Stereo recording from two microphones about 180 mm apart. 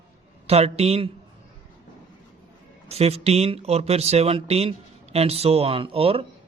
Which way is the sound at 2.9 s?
35° right (ahead or behind).